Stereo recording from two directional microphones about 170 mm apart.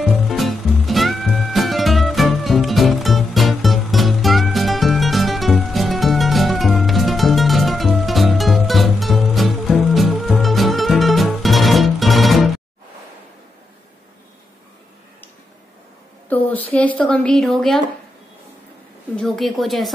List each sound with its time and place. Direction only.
0.0 s music: centre (ahead or behind)
16.3 s a sound: 10° left (ahead or behind)
16.7 s a woman's voice: 10° left (ahead or behind)
19.1 s a woman's voice: centre (ahead or behind)